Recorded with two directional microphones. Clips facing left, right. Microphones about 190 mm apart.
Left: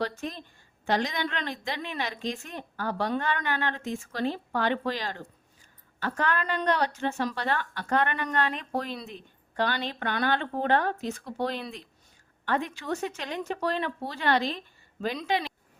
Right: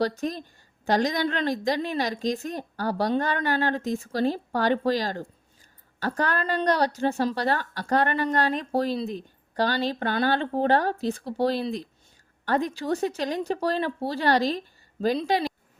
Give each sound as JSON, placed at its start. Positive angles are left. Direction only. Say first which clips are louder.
{"t": 0.0, "sound": "a woman's voice", "louder": "right 6 dB", "side_deg": -40}